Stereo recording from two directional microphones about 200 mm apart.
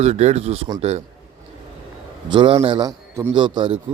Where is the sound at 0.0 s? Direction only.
35° right (ahead or behind).